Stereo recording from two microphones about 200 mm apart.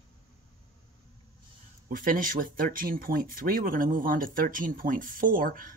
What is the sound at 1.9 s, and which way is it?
Speech, 45° right (ahead or behind).